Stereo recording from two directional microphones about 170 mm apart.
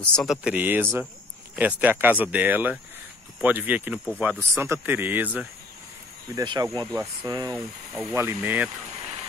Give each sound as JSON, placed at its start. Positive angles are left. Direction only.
{"t": 0.0, "sound": "speech", "side_deg": 5}
{"t": 6.3, "sound": "speech", "side_deg": -25}
{"t": 7.5, "sound": "speech", "side_deg": -5}
{"t": 8.1, "sound": "speech", "side_deg": -15}